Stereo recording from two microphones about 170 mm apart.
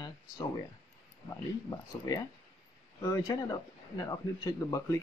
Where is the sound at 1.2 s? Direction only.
20° left (ahead or behind).